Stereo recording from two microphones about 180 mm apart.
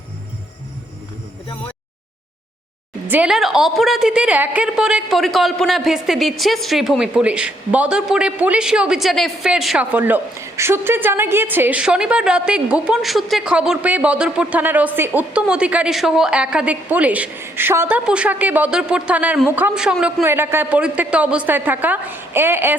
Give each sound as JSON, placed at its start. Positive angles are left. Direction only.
{"t": 3.1, "sound": "a woman's voice", "side_deg": -5}